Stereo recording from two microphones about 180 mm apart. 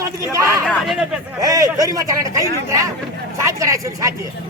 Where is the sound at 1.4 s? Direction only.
20° right (ahead or behind).